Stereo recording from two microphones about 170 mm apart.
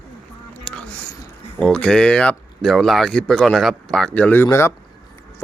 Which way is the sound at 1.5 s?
5° left (ahead or behind).